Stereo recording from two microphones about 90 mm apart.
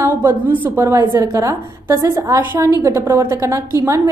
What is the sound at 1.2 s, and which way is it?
A woman's voice, 35° right (ahead or behind).